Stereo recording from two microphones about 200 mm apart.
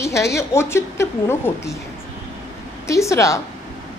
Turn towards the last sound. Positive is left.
turn(degrees=15)  # may be behind; listen again after turning